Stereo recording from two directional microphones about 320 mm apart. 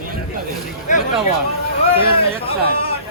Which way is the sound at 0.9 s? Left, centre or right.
Left.